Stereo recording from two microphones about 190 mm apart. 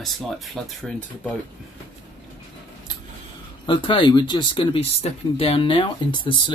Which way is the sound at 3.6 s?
25° left (ahead or behind).